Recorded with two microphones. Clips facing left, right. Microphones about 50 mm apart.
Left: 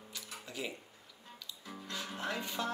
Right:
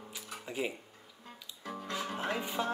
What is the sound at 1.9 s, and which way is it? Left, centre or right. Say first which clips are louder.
Music: right 3 dB; centre.